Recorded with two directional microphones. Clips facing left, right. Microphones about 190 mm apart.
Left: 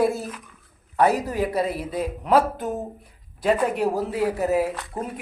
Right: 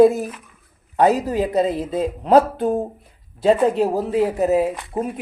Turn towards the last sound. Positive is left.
turn(degrees=-20)  # may be behind; listen again after turning